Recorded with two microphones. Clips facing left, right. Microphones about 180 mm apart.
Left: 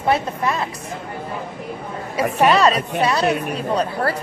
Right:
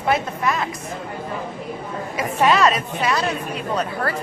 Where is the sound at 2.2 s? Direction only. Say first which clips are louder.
Left 2 dB; 35° left (ahead or behind).